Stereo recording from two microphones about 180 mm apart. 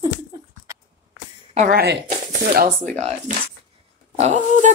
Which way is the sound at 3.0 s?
35° right (ahead or behind).